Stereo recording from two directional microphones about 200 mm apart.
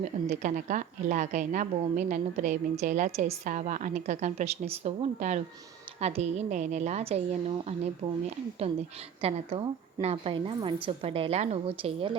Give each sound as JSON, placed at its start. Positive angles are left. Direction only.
{"t": 0.0, "sound": "a woman's voice", "side_deg": -40}
{"t": 9.2, "sound": "a woman's voice", "side_deg": -30}